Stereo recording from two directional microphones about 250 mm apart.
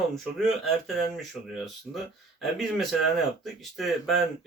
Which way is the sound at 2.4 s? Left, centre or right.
Centre.